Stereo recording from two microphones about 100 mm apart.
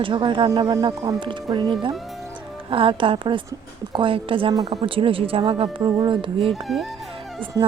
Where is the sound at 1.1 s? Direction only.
50° right (ahead or behind).